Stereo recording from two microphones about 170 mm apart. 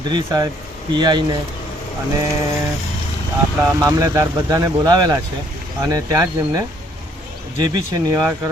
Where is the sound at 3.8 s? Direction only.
20° right (ahead or behind).